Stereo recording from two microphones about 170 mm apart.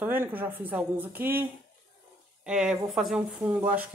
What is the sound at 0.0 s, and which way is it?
A woman's voice, 10° right (ahead or behind).